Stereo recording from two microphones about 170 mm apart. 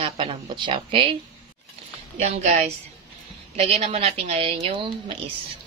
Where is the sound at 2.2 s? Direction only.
45° right (ahead or behind).